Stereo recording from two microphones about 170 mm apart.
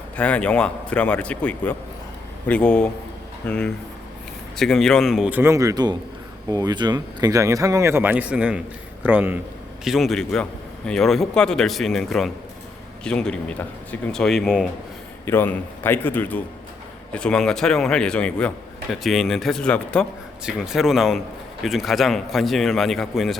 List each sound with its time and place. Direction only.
0.2 s a man's voice: 5° left (ahead or behind)
15.3 s a man's voice: 15° left (ahead or behind)